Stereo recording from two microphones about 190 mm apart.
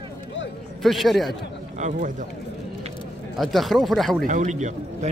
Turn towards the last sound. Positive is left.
turn(degrees=-40)  # may be behind; listen again after turning